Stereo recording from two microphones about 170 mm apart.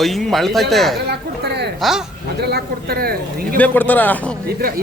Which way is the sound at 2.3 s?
70° right (ahead or behind).